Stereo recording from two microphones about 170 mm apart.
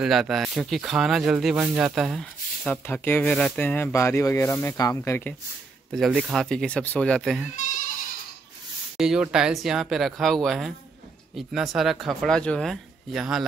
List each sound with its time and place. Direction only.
0.0 s speech: centre (ahead or behind); by 5.3 s 15° left (ahead or behind)
5.9 s speech: 5° right (ahead or behind)
7.5 s bleat: 50° left (ahead or behind)
8.9 s speech: 5° right (ahead or behind)